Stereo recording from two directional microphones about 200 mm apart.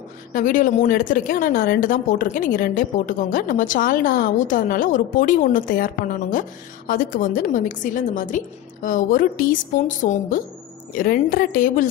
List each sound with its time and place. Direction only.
0.3 s speech: 40° left (ahead or behind)
6.9 s a woman's voice: 45° left (ahead or behind)